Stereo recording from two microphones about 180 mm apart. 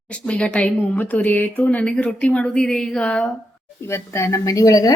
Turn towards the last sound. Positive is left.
turn(degrees=20)  # may be behind; listen again after turning